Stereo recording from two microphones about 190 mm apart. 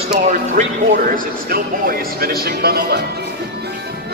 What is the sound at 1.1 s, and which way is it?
Speech, 50° right (ahead or behind).